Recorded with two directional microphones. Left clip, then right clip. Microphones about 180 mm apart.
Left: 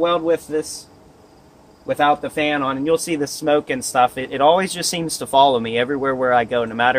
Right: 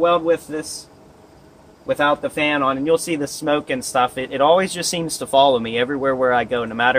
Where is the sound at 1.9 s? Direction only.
20° left (ahead or behind).